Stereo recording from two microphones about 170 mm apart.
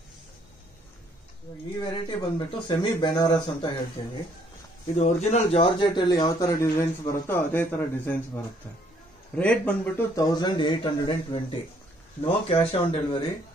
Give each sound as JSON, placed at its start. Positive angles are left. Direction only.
{"t": 1.8, "sound": "speech", "side_deg": 25}
{"t": 4.9, "sound": "speech", "side_deg": 40}
{"t": 9.3, "sound": "speech", "side_deg": 5}